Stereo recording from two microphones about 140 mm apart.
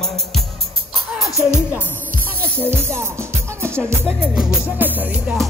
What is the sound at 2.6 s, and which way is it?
Music, 20° right (ahead or behind).